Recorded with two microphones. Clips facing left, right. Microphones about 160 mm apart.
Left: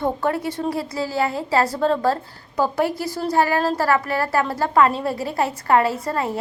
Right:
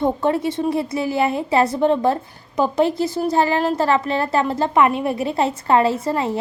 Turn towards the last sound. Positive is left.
turn(degrees=-25)  # may be behind; listen again after turning